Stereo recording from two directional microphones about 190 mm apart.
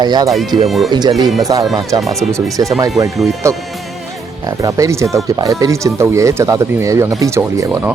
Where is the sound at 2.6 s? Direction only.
20° right (ahead or behind).